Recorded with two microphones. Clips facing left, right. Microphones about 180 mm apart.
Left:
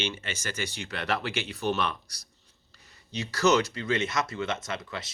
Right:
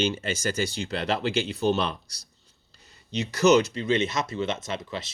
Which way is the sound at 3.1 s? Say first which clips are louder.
Right 4 dB; 20° right (ahead or behind).